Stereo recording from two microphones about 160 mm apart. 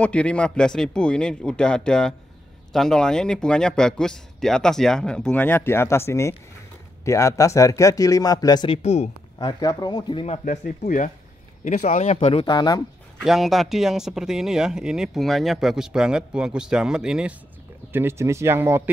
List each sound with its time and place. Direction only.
0.0 s speech: 5° left (ahead or behind); by 8.7 s 25° left (ahead or behind)
8.7 s speech: 45° left (ahead or behind)
9.4 s speech: 25° left (ahead or behind)
10.4 s speech: 50° left (ahead or behind)
12.5 s speech: 25° left (ahead or behind)
13.2 s speech: centre (ahead or behind)
17.9 s speech: 15° right (ahead or behind)